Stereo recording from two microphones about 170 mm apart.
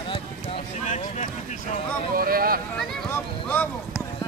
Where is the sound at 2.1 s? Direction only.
60° right (ahead or behind).